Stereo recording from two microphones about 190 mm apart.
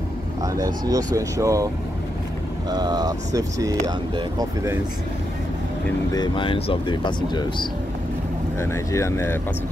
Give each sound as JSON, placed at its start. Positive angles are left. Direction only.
{"t": 0.4, "sound": "vehicle", "side_deg": -20}
{"t": 0.8, "sound": "speech", "side_deg": -20}
{"t": 2.7, "sound": "speech", "side_deg": -20}
{"t": 6.1, "sound": "speech", "side_deg": 25}